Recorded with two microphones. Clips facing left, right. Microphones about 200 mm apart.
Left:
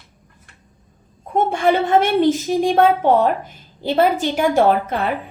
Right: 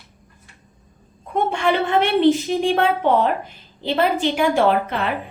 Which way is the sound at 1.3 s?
45° left (ahead or behind).